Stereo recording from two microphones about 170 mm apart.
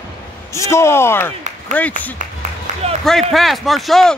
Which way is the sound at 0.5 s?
15° left (ahead or behind).